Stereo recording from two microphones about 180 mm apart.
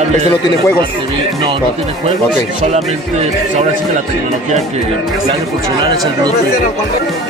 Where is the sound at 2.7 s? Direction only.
40° right (ahead or behind).